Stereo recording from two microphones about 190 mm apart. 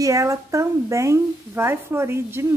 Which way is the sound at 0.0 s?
15° right (ahead or behind).